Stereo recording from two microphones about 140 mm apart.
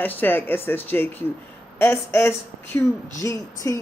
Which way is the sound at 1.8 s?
15° left (ahead or behind).